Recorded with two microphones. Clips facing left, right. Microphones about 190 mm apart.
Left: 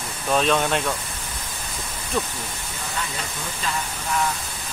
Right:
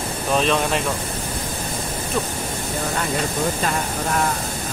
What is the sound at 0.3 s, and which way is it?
Speech, centre (ahead or behind).